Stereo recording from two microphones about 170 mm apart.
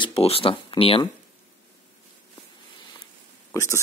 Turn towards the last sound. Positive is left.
turn(degrees=15)  # may be behind; listen again after turning